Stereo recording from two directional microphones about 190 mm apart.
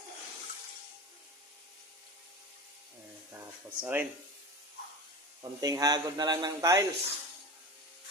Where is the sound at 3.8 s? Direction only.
10° right (ahead or behind).